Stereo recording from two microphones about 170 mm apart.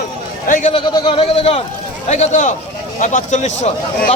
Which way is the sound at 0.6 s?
30° left (ahead or behind).